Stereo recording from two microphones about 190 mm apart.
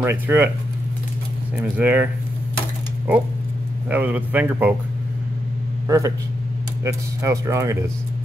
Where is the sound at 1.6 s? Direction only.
10° right (ahead or behind).